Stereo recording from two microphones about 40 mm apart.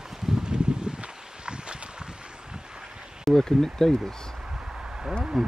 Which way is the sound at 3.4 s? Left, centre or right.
Centre.